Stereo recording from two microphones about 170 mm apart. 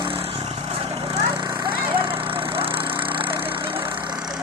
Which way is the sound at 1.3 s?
20° right (ahead or behind).